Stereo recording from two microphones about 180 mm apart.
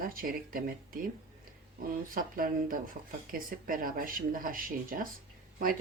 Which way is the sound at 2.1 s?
50° right (ahead or behind).